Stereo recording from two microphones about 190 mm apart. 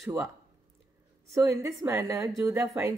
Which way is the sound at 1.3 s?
15° right (ahead or behind).